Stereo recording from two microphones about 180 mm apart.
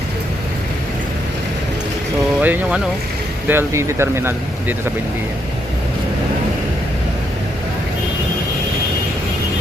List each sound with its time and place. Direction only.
2.4 s speech: 10° right (ahead or behind)